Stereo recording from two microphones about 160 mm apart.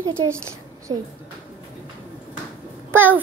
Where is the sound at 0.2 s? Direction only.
15° right (ahead or behind).